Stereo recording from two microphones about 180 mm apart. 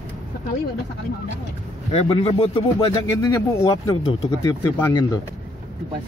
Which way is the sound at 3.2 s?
15° left (ahead or behind).